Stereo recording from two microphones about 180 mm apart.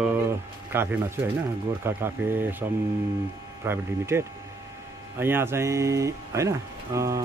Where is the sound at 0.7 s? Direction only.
10° right (ahead or behind).